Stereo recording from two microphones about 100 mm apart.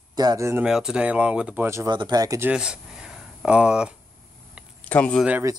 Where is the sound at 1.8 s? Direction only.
45° right (ahead or behind).